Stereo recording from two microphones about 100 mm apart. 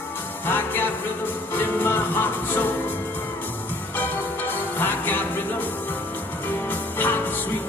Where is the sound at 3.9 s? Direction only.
20° left (ahead or behind).